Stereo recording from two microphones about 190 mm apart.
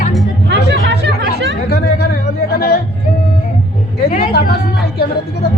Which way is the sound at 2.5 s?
50° left (ahead or behind).